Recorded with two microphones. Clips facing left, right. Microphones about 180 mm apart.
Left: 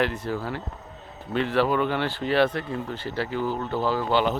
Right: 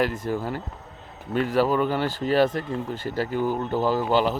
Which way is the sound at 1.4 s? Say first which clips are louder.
Right 1 dB; 40° right (ahead or behind).